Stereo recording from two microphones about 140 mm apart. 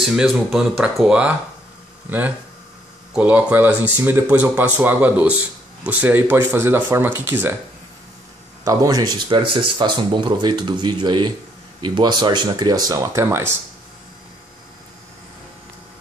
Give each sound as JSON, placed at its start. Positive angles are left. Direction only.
{"t": 0.0, "sound": "speech", "side_deg": -5}
{"t": 8.6, "sound": "speech", "side_deg": -25}